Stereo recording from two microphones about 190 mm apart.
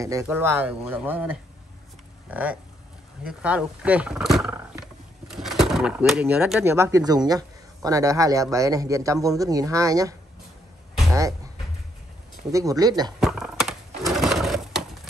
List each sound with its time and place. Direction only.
0.0 s speech: 15° right (ahead or behind)
11.1 s a sound: 15° right (ahead or behind)
12.4 s speech: 15° right (ahead or behind)
13.2 s bird: centre (ahead or behind)